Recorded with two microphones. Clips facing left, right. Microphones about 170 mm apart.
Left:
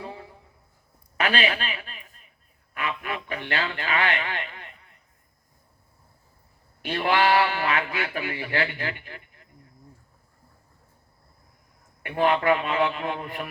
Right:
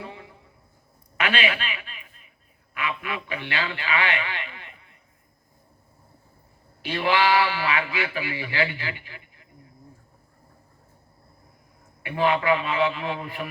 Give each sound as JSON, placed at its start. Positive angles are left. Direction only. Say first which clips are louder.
{"t": 0.0, "sound": "a sound", "louder": "left 1 dB", "side_deg": 30}
{"t": 2.7, "sound": "speech", "louder": "even", "side_deg": 45}
{"t": 6.8, "sound": "a man's voice", "louder": "even", "side_deg": 50}
{"t": 12.0, "sound": "a man's voice", "louder": "left 1 dB", "side_deg": 50}